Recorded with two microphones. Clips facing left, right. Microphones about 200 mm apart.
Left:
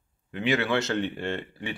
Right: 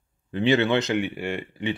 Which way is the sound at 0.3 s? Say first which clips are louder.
Right 5 dB; 30° right (ahead or behind).